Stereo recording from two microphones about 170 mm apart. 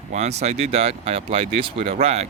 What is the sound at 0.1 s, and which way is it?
Speech, 40° right (ahead or behind).